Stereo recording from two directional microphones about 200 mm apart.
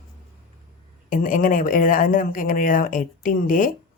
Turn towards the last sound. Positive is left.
turn(degrees=40)  # may be behind; listen again after turning